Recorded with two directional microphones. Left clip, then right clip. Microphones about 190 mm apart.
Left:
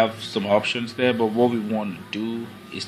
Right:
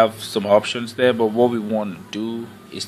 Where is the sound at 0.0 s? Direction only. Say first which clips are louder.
Right 4 dB; 20° right (ahead or behind).